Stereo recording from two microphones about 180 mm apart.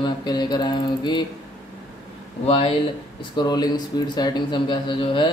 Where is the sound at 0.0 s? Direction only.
25° left (ahead or behind).